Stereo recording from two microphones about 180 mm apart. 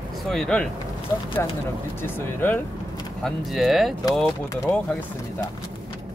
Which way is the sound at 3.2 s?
Centre (ahead or behind).